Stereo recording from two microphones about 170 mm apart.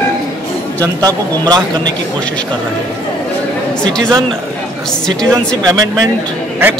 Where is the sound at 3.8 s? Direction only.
5° left (ahead or behind).